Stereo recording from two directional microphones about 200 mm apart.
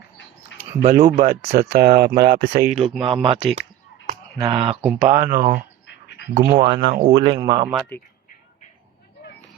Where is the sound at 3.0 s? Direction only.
25° right (ahead or behind).